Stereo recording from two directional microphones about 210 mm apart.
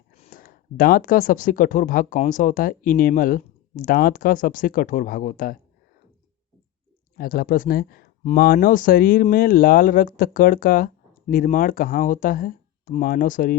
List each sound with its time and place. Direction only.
0.2 s speech: 40° left (ahead or behind)
7.2 s speech: 45° left (ahead or behind)